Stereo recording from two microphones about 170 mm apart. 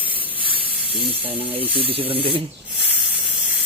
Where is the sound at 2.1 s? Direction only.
35° right (ahead or behind).